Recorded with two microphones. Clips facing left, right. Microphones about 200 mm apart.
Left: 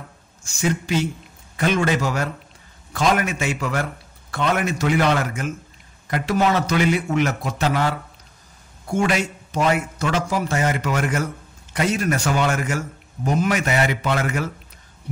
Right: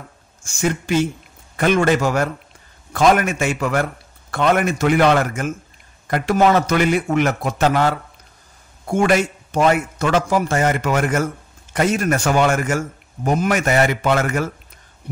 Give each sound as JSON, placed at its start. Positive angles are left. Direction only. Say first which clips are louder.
{"t": 0.4, "sound": "a man's voice", "louder": "right 2 dB", "side_deg": -50}